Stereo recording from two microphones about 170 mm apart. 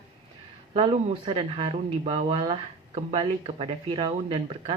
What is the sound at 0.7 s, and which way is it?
Speech, 35° right (ahead or behind).